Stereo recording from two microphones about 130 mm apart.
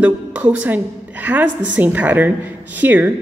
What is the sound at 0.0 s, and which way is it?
A woman's voice, 10° right (ahead or behind).